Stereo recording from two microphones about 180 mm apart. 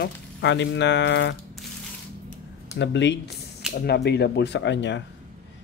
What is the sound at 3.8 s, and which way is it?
Speech, 65° left (ahead or behind).